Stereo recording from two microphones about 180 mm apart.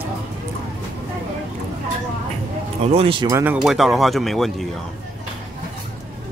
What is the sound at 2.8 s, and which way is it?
Speech, 30° right (ahead or behind).